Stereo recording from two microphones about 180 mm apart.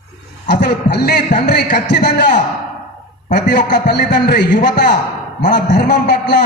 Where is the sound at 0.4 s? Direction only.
70° left (ahead or behind).